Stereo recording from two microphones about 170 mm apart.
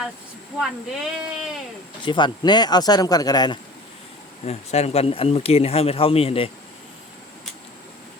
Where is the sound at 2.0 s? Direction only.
25° left (ahead or behind).